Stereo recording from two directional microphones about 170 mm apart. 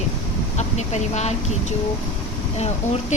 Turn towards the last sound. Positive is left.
turn(degrees=40)  # may be behind; listen again after turning